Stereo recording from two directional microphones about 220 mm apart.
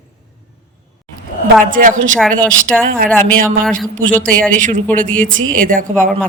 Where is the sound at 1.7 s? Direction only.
35° right (ahead or behind).